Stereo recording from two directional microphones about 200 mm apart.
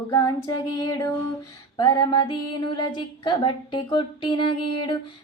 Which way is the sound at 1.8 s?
20° left (ahead or behind).